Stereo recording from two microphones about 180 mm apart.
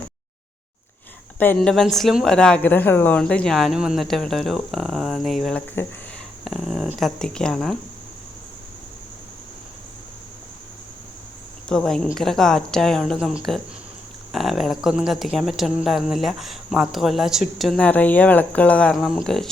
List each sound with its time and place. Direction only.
1.4 s speech: 5° left (ahead or behind)
11.7 s speech: 5° left (ahead or behind)